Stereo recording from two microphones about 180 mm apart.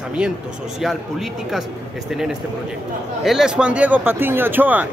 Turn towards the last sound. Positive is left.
turn(degrees=-10)  # may be behind; listen again after turning